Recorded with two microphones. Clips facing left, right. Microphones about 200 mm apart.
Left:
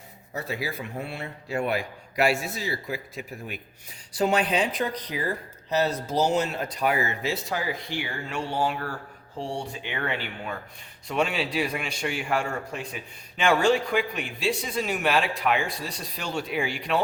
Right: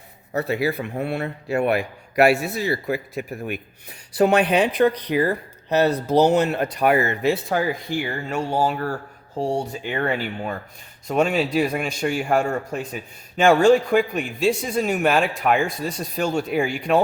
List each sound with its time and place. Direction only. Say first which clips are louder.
0.3 s a man's voice: right 9 dB; 65° right (ahead or behind); by 17.0 s 45° right (ahead or behind)